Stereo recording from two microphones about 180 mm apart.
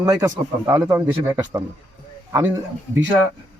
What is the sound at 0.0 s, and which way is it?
A man's voice, 20° right (ahead or behind).